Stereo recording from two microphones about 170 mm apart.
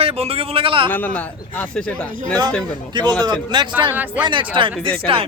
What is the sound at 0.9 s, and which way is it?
A man's voice, 10° left (ahead or behind).